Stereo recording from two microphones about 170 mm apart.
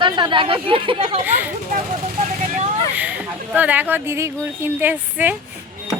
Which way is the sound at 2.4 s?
45° right (ahead or behind).